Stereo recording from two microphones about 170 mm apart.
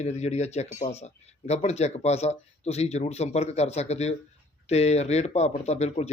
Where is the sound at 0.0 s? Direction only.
40° left (ahead or behind).